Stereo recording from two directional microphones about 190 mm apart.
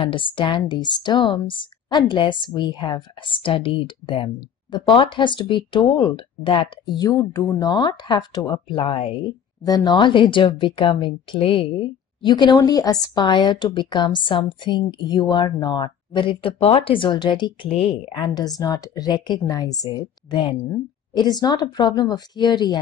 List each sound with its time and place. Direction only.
0.0 s speech: 25° left (ahead or behind)